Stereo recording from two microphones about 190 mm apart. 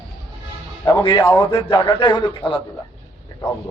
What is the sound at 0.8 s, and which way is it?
A man's voice, 25° left (ahead or behind).